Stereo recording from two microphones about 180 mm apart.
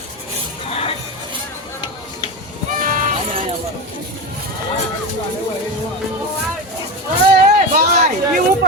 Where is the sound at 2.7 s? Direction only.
50° right (ahead or behind).